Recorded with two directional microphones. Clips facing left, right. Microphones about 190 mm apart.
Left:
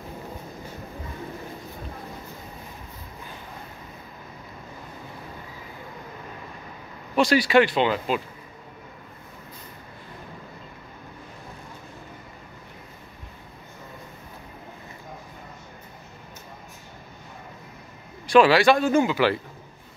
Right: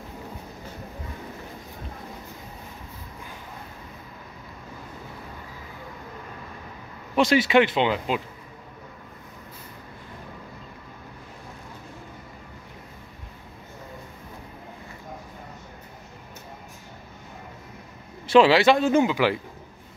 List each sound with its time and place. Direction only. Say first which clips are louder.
7.2 s speech: even; 20° right (ahead or behind)
18.2 s speech: even; 25° right (ahead or behind)